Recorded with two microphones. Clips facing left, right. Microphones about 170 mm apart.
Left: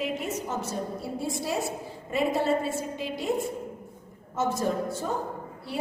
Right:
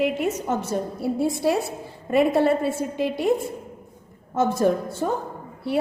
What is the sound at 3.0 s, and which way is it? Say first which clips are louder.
Speech: right 9 dB; 65° right (ahead or behind).